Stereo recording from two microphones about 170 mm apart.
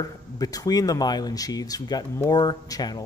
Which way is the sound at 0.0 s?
20° left (ahead or behind).